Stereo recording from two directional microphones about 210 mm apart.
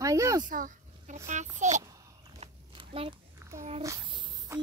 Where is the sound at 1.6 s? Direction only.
35° right (ahead or behind).